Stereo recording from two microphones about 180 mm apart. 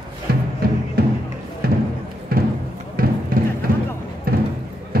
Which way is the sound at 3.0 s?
55° right (ahead or behind).